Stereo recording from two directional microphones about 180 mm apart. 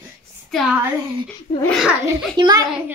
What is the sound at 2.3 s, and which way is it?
Speech, 20° right (ahead or behind).